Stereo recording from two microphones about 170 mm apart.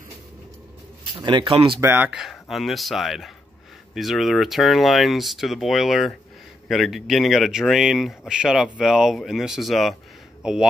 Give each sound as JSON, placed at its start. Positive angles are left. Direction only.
{"t": 1.1, "sound": "speech", "side_deg": -30}
{"t": 1.8, "sound": "speech", "side_deg": -10}